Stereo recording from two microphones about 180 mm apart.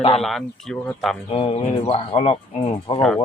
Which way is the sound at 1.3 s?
30° left (ahead or behind).